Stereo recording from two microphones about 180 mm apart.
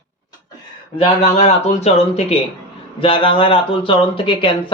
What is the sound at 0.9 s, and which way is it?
Speech, 35° left (ahead or behind).